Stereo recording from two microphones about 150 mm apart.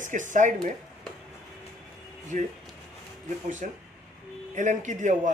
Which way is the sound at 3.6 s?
60° right (ahead or behind).